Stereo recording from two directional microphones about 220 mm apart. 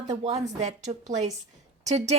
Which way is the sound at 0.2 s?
30° right (ahead or behind).